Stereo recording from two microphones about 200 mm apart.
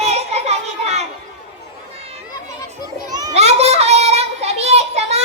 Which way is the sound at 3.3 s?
35° right (ahead or behind).